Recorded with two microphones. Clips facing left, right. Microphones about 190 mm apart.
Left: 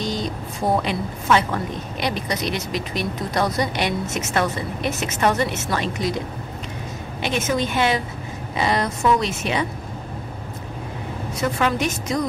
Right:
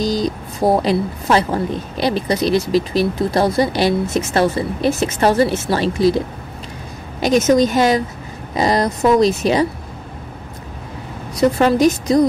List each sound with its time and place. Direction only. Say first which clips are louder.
0.0 s a woman's voice: right 7 dB; 35° right (ahead or behind)
11.3 s a woman's voice: right 8 dB; 35° right (ahead or behind)